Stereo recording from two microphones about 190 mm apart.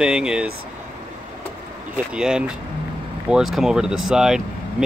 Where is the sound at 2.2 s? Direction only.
5° right (ahead or behind).